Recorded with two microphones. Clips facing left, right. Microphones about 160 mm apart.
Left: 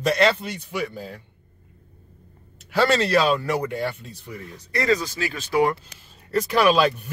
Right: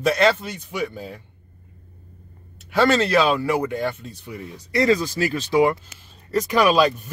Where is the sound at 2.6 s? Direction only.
Centre (ahead or behind).